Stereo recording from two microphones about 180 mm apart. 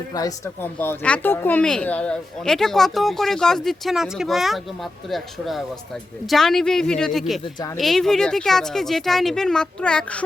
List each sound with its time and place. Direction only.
0.1 s speech: 20° left (ahead or behind); by 7.4 s centre (ahead or behind)
7.4 s speech: 20° left (ahead or behind)
7.8 s speech: centre (ahead or behind)